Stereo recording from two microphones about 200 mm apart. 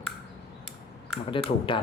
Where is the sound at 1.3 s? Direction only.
25° left (ahead or behind).